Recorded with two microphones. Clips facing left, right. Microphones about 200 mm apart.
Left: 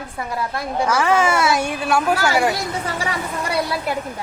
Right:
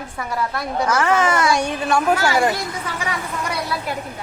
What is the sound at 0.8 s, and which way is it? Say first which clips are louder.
A woman's voice: left 1 dB; 10° left (ahead or behind).